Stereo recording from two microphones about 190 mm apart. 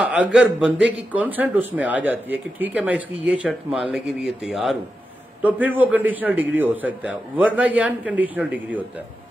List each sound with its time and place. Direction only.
0.0 s a man's voice: 5° right (ahead or behind)